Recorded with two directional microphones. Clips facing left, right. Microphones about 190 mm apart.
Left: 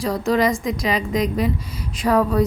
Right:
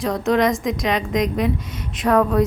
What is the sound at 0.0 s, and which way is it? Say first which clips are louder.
A woman's voice: right 1 dB; centre (ahead or behind).